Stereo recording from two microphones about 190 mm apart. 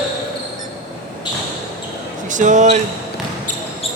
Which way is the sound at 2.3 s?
40° right (ahead or behind).